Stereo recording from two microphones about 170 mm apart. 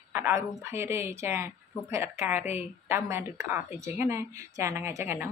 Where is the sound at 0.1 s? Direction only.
15° right (ahead or behind).